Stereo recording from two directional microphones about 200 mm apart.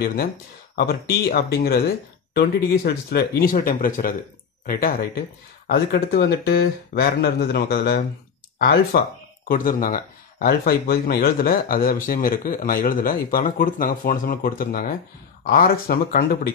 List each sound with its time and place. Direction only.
0.0 s speech: 50° left (ahead or behind)